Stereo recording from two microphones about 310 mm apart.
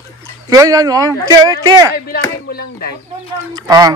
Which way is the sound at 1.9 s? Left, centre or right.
Left.